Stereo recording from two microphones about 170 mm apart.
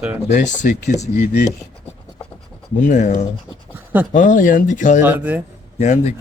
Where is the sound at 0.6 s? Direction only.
45° left (ahead or behind).